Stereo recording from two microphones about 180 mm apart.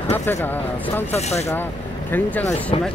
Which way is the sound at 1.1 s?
35° left (ahead or behind).